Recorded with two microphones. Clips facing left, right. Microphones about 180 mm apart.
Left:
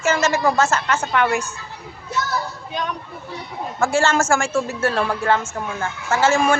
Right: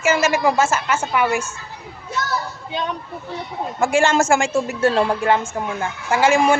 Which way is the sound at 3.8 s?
15° right (ahead or behind).